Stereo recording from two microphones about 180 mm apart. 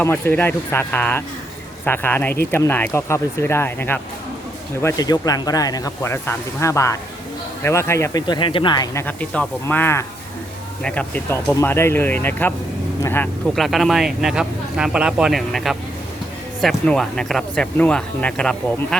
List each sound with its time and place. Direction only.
0.0 s speech: 10° left (ahead or behind)
9.0 s speech: 10° left (ahead or behind)